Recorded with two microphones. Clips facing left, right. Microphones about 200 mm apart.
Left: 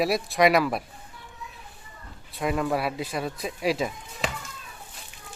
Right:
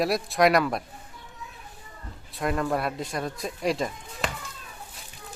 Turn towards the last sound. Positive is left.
turn(degrees=0)  # may be behind; listen again after turning